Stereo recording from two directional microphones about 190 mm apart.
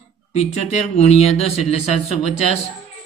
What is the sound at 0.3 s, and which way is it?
Speech, 35° left (ahead or behind).